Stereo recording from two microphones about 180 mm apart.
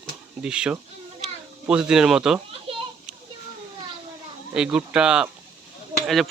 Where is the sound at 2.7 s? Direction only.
30° right (ahead or behind).